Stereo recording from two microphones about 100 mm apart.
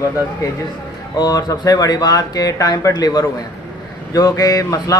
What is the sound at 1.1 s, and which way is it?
A man's voice, 40° left (ahead or behind).